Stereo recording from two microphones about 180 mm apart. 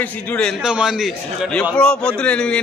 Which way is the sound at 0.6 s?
5° right (ahead or behind).